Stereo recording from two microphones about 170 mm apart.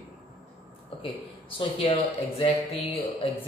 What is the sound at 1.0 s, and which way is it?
A man's voice, 30° left (ahead or behind).